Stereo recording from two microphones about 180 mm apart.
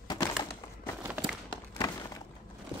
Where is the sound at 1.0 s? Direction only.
10° right (ahead or behind).